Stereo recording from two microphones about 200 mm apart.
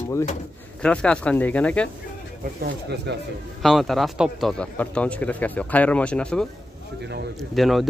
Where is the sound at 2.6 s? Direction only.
55° right (ahead or behind).